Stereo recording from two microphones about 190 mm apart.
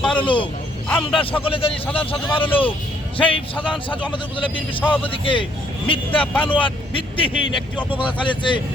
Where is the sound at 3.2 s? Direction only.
25° left (ahead or behind).